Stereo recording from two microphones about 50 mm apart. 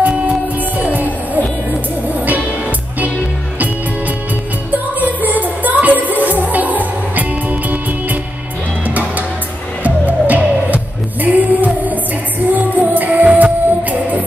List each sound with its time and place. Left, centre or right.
0.9 s music: right
5.0 s music: right